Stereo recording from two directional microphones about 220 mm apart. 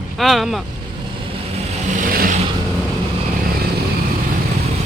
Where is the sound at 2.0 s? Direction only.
40° right (ahead or behind).